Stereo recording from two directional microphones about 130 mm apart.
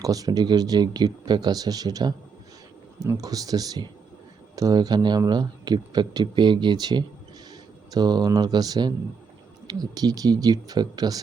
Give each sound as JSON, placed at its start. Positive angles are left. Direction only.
{"t": 0.0, "sound": "speech", "side_deg": -30}